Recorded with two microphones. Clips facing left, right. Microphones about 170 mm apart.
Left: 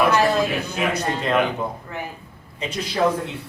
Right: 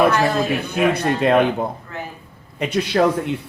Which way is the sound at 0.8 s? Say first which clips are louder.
Right 7 dB; 60° right (ahead or behind).